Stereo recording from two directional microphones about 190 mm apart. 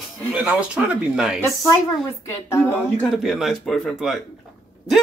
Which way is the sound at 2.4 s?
10° left (ahead or behind).